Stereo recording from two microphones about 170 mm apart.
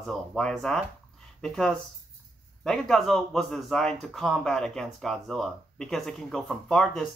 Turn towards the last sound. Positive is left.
turn(degrees=5)  # may be behind; listen again after turning